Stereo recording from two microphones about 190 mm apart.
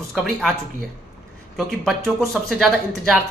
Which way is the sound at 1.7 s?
Centre (ahead or behind).